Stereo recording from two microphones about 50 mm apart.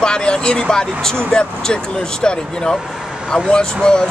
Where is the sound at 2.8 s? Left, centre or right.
Centre.